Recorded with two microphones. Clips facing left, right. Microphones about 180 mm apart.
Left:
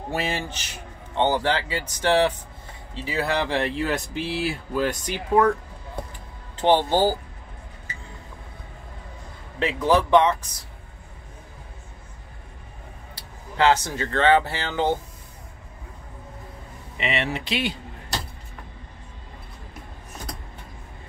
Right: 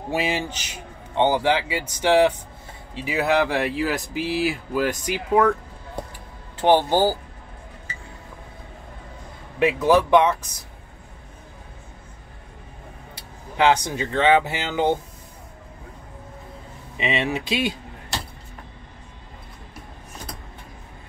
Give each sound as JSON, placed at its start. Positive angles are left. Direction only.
{"t": 0.1, "sound": "speech", "side_deg": -10}
{"t": 6.6, "sound": "speech", "side_deg": -10}
{"t": 9.6, "sound": "speech", "side_deg": -10}
{"t": 13.6, "sound": "speech", "side_deg": -15}
{"t": 16.9, "sound": "speech", "side_deg": -15}